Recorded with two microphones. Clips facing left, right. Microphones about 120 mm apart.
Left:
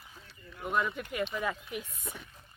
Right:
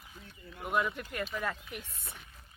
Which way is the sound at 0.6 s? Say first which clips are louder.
Left 1 dB; centre (ahead or behind).